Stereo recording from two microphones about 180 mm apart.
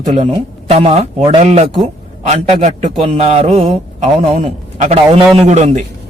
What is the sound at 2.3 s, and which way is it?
Speech, 40° right (ahead or behind).